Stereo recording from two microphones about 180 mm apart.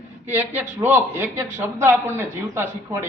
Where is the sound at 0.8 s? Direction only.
10° right (ahead or behind).